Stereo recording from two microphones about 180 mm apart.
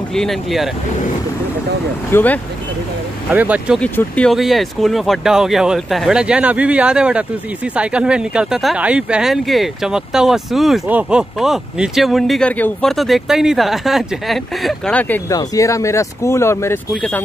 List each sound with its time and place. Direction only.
0.1 s speech: centre (ahead or behind)
2.0 s speech: 10° left (ahead or behind)
3.3 s speech: 10° right (ahead or behind)
3.8 s speech: 5° left (ahead or behind)